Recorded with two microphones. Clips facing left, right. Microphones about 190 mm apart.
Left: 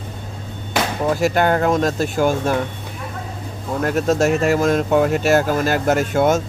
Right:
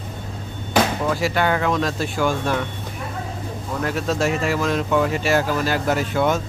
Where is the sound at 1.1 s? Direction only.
45° left (ahead or behind).